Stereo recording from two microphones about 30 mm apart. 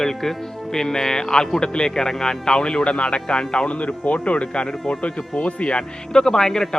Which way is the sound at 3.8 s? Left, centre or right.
Left.